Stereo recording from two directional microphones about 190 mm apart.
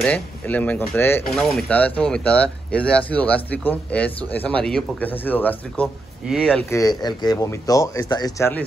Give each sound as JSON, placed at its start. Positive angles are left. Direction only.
{"t": 0.0, "sound": "speech", "side_deg": 5}
{"t": 6.7, "sound": "speech", "side_deg": 20}